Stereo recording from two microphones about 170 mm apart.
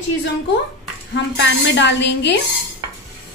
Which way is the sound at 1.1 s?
90° left.